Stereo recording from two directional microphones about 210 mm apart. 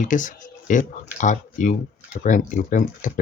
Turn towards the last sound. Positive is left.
turn(degrees=35)  # may be behind; listen again after turning